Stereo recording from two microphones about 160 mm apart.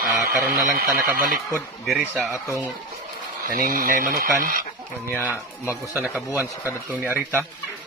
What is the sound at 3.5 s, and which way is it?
Speech, 65° right (ahead or behind).